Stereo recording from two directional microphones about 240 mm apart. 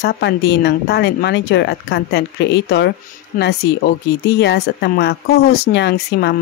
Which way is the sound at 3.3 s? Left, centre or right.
Left.